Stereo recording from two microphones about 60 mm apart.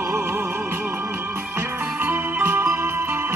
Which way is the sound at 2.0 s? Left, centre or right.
Right.